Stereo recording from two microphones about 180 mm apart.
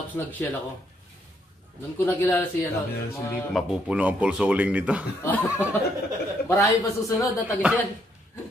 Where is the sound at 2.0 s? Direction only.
15° left (ahead or behind).